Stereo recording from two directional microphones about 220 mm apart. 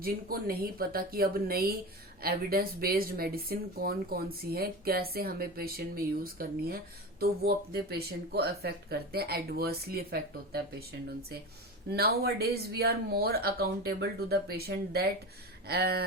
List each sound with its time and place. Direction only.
0.0 s speech: 40° right (ahead or behind)